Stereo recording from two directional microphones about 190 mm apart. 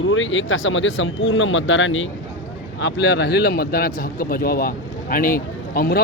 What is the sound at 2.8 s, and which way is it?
A man's voice, 65° left (ahead or behind).